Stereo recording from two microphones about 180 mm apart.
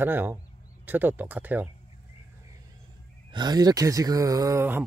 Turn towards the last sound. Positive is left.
turn(degrees=-15)  # may be behind; listen again after turning